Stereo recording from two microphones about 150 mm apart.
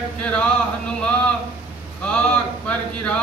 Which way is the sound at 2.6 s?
10° left (ahead or behind).